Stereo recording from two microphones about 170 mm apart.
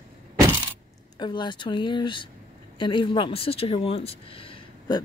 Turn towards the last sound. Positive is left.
turn(degrees=30)  # may be behind; listen again after turning